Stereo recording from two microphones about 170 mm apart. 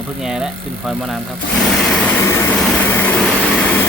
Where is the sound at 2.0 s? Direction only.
15° left (ahead or behind).